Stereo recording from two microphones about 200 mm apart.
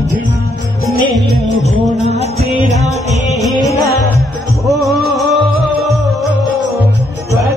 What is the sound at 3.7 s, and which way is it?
Music, 15° left (ahead or behind).